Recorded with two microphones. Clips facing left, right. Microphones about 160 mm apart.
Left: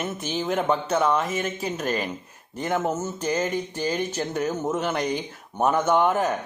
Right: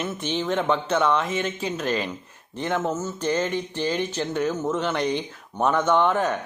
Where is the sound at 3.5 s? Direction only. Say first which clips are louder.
Right 1 dB; 40° left (ahead or behind).